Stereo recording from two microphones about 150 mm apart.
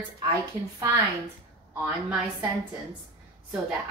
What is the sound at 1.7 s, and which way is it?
Speech, 10° right (ahead or behind).